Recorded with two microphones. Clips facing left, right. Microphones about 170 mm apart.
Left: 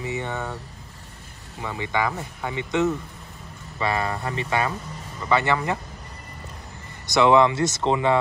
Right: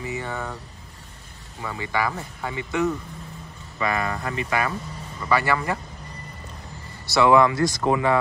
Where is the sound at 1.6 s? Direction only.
20° left (ahead or behind).